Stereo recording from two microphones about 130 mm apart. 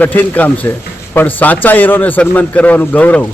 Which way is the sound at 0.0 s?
15° left (ahead or behind).